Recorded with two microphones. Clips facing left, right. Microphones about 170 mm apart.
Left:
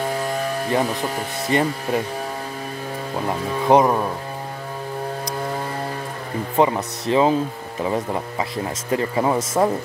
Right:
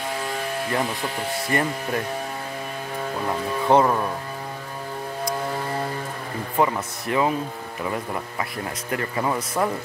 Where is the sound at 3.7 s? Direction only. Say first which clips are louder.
Left 3 dB; 15° left (ahead or behind).